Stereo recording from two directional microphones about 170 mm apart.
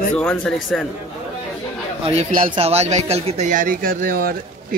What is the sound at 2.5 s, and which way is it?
Speech, 35° right (ahead or behind).